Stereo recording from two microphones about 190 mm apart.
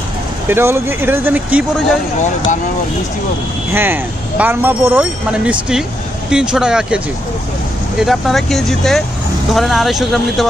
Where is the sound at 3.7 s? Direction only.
10° right (ahead or behind).